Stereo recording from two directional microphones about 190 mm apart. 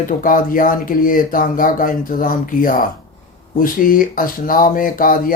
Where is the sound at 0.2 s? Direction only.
45° left (ahead or behind).